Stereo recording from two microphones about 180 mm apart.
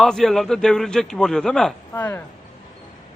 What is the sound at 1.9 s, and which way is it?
Speech, 15° left (ahead or behind).